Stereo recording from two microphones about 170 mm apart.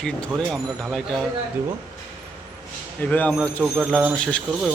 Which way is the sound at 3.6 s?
10° right (ahead or behind).